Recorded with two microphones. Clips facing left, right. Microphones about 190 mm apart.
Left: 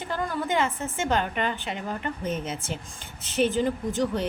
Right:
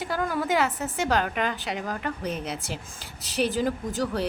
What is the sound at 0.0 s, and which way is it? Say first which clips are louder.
A woman's voice: right 2 dB; 10° right (ahead or behind).